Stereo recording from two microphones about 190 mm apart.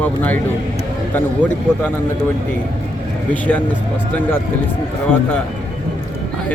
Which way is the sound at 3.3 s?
10° left (ahead or behind).